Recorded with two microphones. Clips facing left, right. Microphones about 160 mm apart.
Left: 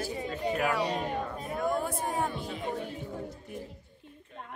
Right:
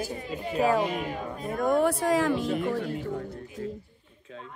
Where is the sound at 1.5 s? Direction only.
50° right (ahead or behind).